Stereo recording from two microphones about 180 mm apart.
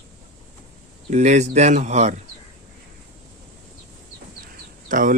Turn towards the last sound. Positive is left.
turn(degrees=-50)  # may be behind; listen again after turning